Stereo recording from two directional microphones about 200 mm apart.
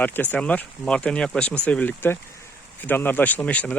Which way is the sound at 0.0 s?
10° left (ahead or behind).